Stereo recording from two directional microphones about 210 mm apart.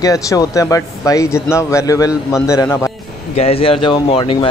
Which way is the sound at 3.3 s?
30° left (ahead or behind).